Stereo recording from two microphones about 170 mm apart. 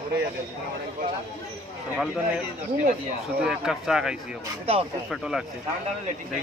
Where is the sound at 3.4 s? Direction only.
5° right (ahead or behind).